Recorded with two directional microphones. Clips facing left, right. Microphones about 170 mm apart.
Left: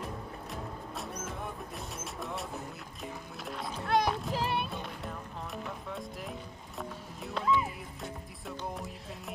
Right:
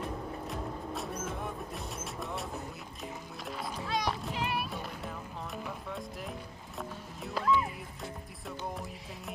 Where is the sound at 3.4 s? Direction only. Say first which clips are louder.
Even; centre (ahead or behind).